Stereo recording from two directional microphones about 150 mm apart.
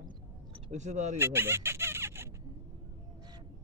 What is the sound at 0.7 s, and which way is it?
Speech, 50° right (ahead or behind).